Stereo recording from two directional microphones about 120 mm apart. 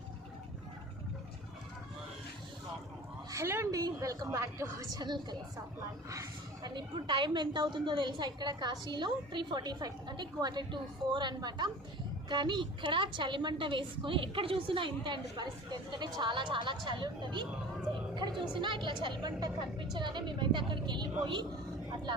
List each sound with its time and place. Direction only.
3.3 s a woman's voice: 20° right (ahead or behind)
4.9 s a woman's voice: 35° right (ahead or behind)